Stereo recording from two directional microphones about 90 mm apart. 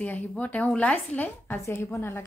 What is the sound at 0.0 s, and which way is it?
A woman's voice, 15° left (ahead or behind).